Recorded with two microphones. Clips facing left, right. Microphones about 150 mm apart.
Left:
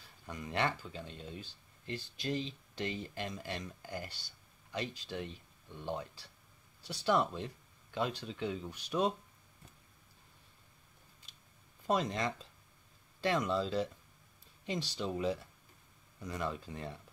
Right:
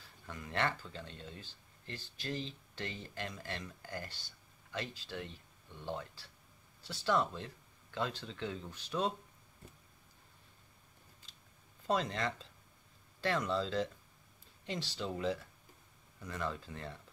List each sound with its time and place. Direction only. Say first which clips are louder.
0.3 s speech: left 1 dB; 15° left (ahead or behind)
11.9 s speech: left 2 dB; 15° left (ahead or behind)